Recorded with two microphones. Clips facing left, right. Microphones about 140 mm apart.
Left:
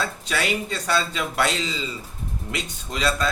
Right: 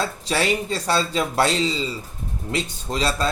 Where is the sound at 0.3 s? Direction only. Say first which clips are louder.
Right 5 dB; 30° right (ahead or behind).